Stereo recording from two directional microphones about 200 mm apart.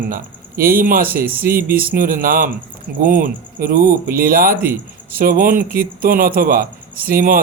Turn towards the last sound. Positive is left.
turn(degrees=-45)  # may be behind; listen again after turning